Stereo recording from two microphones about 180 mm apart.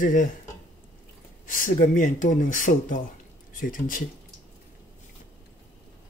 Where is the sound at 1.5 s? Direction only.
50° left (ahead or behind).